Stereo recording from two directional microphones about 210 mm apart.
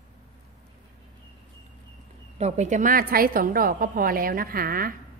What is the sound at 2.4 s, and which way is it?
A woman's voice, 35° right (ahead or behind).